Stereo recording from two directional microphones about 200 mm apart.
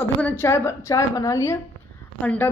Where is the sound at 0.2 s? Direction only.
10° left (ahead or behind).